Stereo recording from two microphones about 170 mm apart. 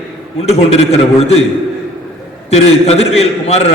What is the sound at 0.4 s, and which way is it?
Speech, 35° left (ahead or behind).